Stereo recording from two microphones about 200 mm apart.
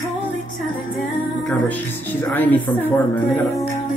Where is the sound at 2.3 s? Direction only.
10° left (ahead or behind).